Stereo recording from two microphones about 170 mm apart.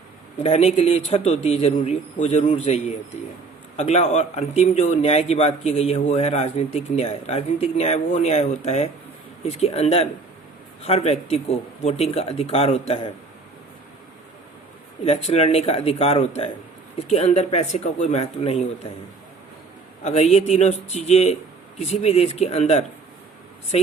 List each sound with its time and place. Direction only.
0.4 s speech: 35° left (ahead or behind)
15.0 s speech: 40° left (ahead or behind)
20.1 s speech: 40° left (ahead or behind)